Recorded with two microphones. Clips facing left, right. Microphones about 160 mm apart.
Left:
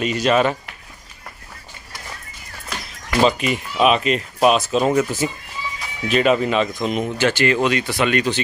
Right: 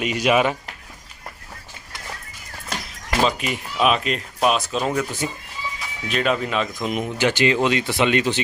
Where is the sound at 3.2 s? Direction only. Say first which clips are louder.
Left 5 dB; centre (ahead or behind).